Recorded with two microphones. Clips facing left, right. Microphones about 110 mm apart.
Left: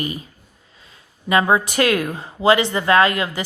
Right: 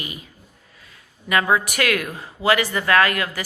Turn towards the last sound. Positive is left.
turn(degrees=25)  # may be behind; listen again after turning